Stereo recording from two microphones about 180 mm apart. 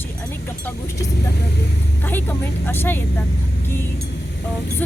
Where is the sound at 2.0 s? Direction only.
10° left (ahead or behind).